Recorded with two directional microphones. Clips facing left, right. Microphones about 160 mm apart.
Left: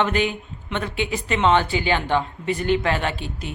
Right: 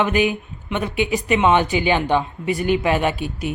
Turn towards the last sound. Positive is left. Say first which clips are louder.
# right 5 dB
turn(degrees=-15)  # may be behind; listen again after turning